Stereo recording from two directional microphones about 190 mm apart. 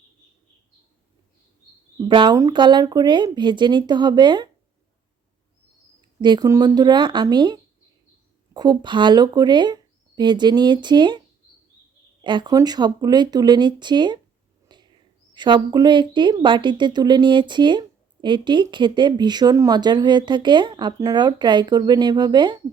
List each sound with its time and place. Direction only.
2.0 s a woman's voice: 25° right (ahead or behind)
6.2 s a woman's voice: 20° right (ahead or behind)
12.2 s a woman's voice: 25° right (ahead or behind)
14.7 s a sound: 25° right (ahead or behind)
15.4 s a woman's voice: 25° right (ahead or behind)